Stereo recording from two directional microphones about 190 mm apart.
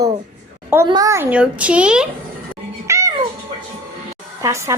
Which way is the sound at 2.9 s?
15° right (ahead or behind).